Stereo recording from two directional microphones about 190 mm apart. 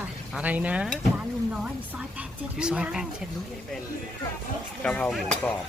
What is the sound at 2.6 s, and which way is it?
Speech, 5° right (ahead or behind).